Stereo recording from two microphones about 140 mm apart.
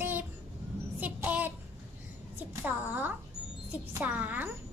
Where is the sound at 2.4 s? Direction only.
15° right (ahead or behind).